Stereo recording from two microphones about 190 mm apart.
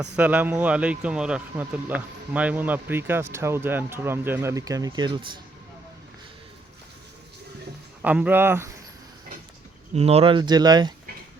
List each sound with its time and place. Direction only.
0.2 s speech: 10° right (ahead or behind); by 5.4 s 25° right (ahead or behind)
8.0 s speech: 5° right (ahead or behind)
9.9 s speech: 35° right (ahead or behind)